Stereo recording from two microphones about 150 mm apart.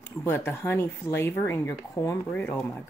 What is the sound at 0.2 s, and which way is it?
Speech, 15° left (ahead or behind).